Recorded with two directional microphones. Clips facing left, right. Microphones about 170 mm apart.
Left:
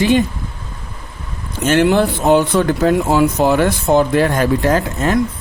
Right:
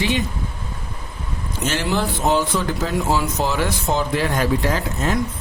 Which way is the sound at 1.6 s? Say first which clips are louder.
Left 9 dB; 55° left (ahead or behind).